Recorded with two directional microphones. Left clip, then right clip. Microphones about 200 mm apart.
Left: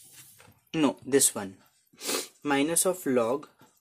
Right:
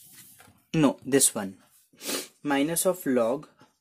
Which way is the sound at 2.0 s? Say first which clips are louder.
Left 1 dB; 10° right (ahead or behind).